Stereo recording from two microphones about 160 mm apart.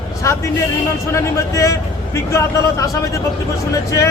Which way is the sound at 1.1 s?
20° left (ahead or behind).